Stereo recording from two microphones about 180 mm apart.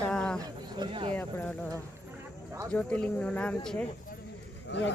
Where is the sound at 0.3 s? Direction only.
25° right (ahead or behind).